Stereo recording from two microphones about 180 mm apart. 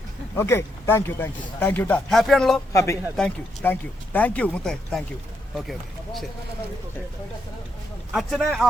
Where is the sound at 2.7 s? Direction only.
15° left (ahead or behind).